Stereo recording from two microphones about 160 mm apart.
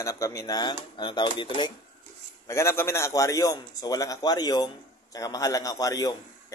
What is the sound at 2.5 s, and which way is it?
Speech, 15° left (ahead or behind).